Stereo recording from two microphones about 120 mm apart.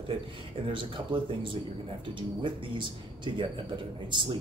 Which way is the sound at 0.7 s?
45° right (ahead or behind).